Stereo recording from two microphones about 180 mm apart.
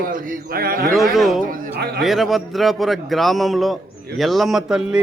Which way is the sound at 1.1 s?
Centre (ahead or behind).